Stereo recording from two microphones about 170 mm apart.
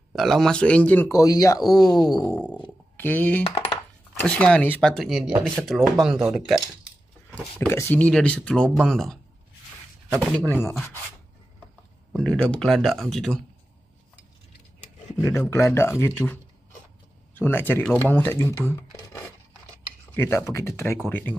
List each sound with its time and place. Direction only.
0.1 s a man's voice: centre (ahead or behind); by 1.6 s 20° left (ahead or behind)
1.6 s speech: centre (ahead or behind)
1.9 s a sound: 25° left (ahead or behind)
3.0 s a man's voice: 10° left (ahead or behind)
7.5 s a man's voice: 15° left (ahead or behind)
10.5 s a man's voice: 15° left (ahead or behind)
12.1 s speech: 5° left (ahead or behind)
15.1 s a man's voice: 15° left (ahead or behind)